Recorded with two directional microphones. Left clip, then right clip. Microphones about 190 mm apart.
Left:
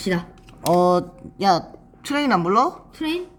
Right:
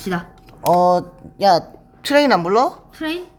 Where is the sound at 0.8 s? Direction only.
5° right (ahead or behind).